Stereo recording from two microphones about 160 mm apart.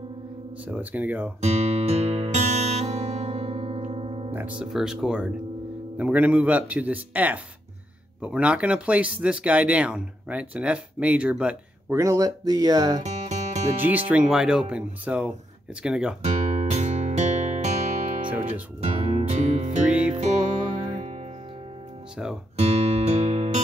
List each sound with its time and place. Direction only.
0.7 s speech: 10° right (ahead or behind)
1.4 s music: 40° right (ahead or behind)
4.3 s speech: 10° right (ahead or behind)
12.0 s speech: 20° right (ahead or behind)
13.0 s music: 45° right (ahead or behind)
13.7 s speech: 10° right (ahead or behind)
16.2 s music: 45° right (ahead or behind)
19.8 s music: 5° right (ahead or behind)
22.1 s speech: 5° right (ahead or behind)
22.6 s music: 40° right (ahead or behind)